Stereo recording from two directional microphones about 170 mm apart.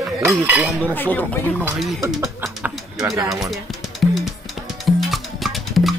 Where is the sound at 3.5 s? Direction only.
Centre (ahead or behind).